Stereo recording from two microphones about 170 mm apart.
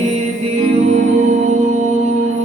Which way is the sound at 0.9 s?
40° right (ahead or behind).